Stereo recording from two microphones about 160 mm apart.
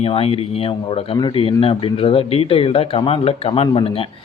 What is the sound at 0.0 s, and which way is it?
Speech, 35° left (ahead or behind).